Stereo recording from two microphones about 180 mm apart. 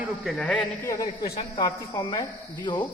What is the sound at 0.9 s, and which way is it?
A man's voice, 20° left (ahead or behind).